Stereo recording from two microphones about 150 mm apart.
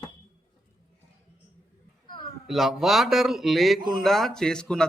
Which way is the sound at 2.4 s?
Centre (ahead or behind).